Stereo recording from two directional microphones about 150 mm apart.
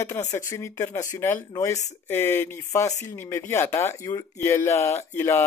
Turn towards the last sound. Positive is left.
turn(degrees=15)  # may be behind; listen again after turning